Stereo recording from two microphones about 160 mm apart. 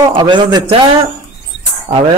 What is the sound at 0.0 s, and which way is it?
Speech, 30° right (ahead or behind).